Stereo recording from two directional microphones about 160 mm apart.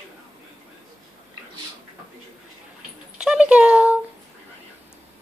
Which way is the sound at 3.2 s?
5° right (ahead or behind).